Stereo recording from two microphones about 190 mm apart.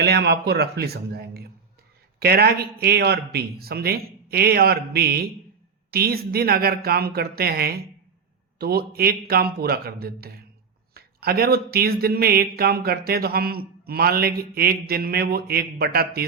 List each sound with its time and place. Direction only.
0.0 s a man's voice: 60° right (ahead or behind)